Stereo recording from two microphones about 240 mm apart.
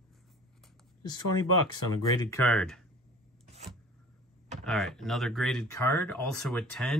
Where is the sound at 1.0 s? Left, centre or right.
Centre.